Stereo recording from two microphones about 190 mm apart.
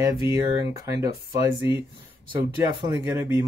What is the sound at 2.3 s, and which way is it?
Speech, 25° right (ahead or behind).